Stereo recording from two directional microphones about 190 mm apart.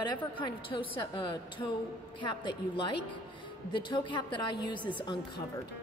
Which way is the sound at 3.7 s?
25° left (ahead or behind).